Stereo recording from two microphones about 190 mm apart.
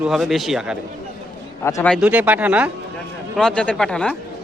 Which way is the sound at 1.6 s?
15° left (ahead or behind).